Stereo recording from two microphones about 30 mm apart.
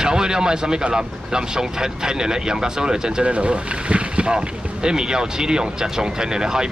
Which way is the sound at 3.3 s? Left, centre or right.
Right.